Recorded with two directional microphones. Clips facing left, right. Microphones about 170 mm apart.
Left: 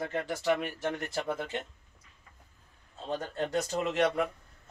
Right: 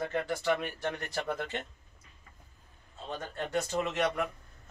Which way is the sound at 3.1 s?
35° left (ahead or behind).